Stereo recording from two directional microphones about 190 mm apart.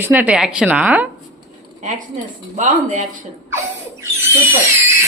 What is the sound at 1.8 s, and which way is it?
Speech, 40° right (ahead or behind).